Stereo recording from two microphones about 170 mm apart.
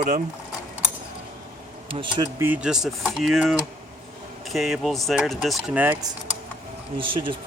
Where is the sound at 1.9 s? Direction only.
30° right (ahead or behind).